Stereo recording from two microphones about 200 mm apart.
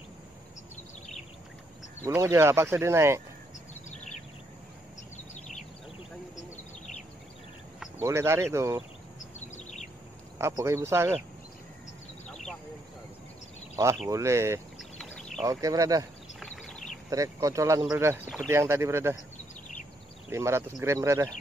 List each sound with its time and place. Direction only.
2.0 s speech: 15° right (ahead or behind)
3.9 s a sound: 35° left (ahead or behind)
8.0 s speech: 15° right (ahead or behind)
9.4 s bird vocalization: 35° left (ahead or behind)
10.4 s speech: 15° right (ahead or behind)
14.0 s speech: 15° right (ahead or behind)
14.8 s a sound: centre (ahead or behind)
15.4 s speech: 15° right (ahead or behind)
16.3 s a sound: 5° left (ahead or behind)
17.1 s speech: 15° right (ahead or behind)
20.2 s speech: 15° right (ahead or behind)